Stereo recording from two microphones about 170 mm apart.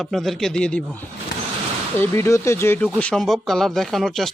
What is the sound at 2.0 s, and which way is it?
Speech, 15° left (ahead or behind).